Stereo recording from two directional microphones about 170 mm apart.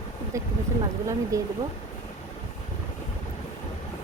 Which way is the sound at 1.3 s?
20° right (ahead or behind).